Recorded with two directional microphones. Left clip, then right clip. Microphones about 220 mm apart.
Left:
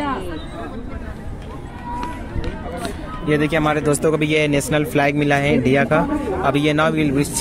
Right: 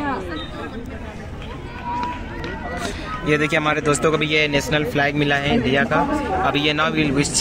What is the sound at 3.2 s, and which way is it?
Speech, 10° left (ahead or behind).